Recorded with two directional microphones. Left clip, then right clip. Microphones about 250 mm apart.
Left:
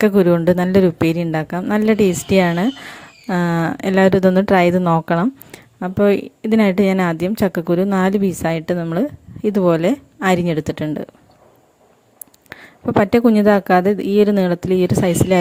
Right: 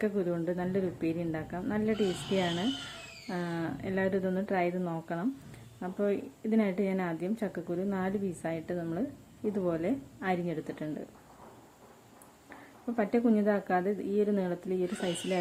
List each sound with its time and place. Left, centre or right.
0.0 s a woman's voice: left
13.0 s speech: left